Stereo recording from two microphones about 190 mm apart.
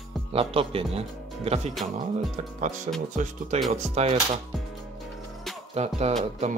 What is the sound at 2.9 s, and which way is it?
Speech, 35° right (ahead or behind).